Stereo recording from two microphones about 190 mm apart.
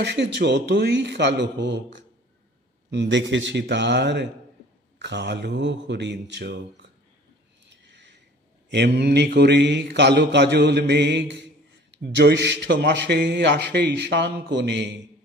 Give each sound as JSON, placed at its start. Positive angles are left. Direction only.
{"t": 0.0, "sound": "a man's voice", "side_deg": -65}
{"t": 8.6, "sound": "a man's voice", "side_deg": -65}